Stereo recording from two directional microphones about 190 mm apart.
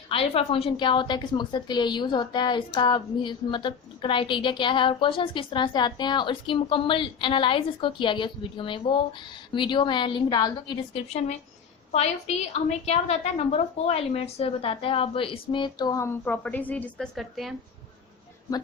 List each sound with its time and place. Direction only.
0.1 s a woman's voice: 30° left (ahead or behind)
11.9 s a woman's voice: 35° left (ahead or behind); by 17.5 s centre (ahead or behind)